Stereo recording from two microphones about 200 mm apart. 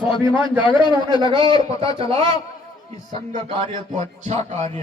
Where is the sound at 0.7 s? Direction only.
25° left (ahead or behind).